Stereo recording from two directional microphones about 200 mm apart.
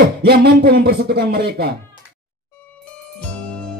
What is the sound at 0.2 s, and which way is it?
Speech, 50° right (ahead or behind).